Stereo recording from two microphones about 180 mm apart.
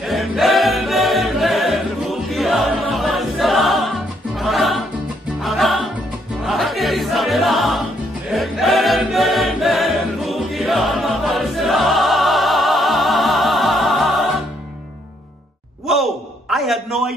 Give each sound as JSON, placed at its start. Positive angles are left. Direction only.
{"t": 0.0, "sound": "a capella", "side_deg": 0}
{"t": 5.4, "sound": "music", "side_deg": 0}
{"t": 8.3, "sound": "choir", "side_deg": 0}
{"t": 15.9, "sound": "a sound", "side_deg": 0}